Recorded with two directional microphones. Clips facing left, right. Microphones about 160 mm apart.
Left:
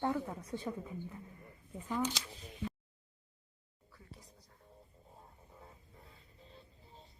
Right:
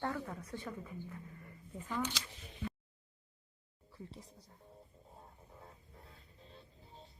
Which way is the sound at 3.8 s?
25° right (ahead or behind).